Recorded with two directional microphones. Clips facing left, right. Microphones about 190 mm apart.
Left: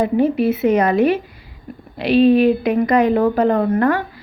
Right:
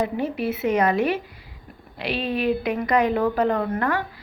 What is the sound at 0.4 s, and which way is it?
Speech, 35° left (ahead or behind).